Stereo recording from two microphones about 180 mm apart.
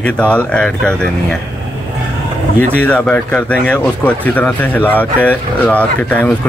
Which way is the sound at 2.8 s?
5° left (ahead or behind).